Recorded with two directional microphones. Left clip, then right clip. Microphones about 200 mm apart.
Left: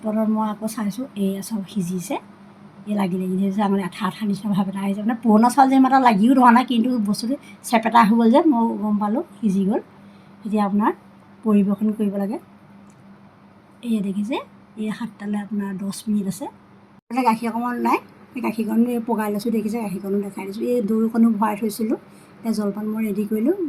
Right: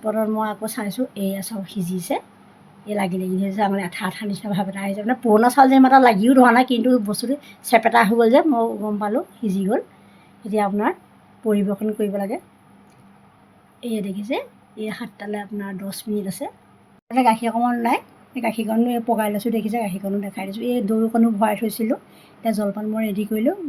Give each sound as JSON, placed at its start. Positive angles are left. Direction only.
{"t": 0.0, "sound": "a woman's voice", "side_deg": -15}
{"t": 13.8, "sound": "a woman's voice", "side_deg": -15}